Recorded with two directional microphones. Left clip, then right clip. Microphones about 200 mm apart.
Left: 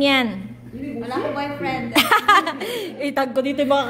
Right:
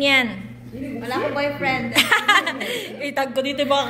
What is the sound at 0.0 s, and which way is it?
Speech, 45° left (ahead or behind).